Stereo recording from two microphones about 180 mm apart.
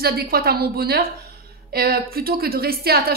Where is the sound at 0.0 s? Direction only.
55° right (ahead or behind).